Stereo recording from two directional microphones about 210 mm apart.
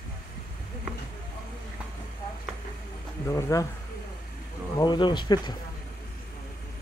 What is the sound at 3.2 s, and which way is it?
Speech, 15° left (ahead or behind).